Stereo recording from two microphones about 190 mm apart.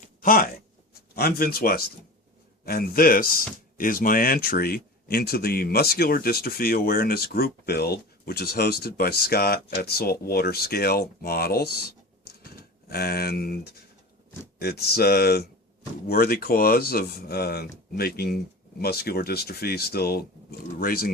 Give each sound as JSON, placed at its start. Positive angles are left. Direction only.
{"t": 0.0, "sound": "a sound", "side_deg": 45}
{"t": 1.1, "sound": "speech", "side_deg": 55}
{"t": 14.6, "sound": "speech", "side_deg": 55}